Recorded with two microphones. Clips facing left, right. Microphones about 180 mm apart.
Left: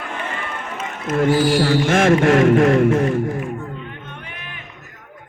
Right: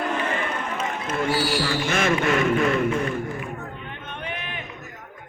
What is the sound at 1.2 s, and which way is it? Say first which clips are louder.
Speech: left 8 dB; 50° left (ahead or behind).